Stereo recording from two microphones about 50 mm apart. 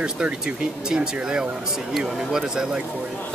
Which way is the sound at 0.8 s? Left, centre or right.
Centre.